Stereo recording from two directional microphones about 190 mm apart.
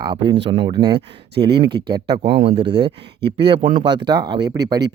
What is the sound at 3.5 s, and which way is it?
Speech, 40° right (ahead or behind).